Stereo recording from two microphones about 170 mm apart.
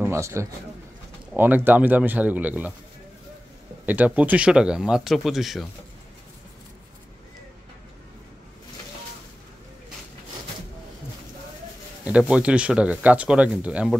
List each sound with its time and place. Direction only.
0.0 s a man's voice: 15° right (ahead or behind)
3.8 s speech: 10° right (ahead or behind)
12.0 s speech: 5° right (ahead or behind)